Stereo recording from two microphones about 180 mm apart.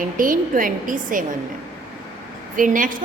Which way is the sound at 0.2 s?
50° right (ahead or behind).